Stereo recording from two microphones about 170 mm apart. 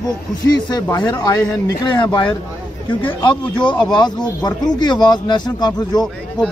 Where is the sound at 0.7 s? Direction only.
25° left (ahead or behind).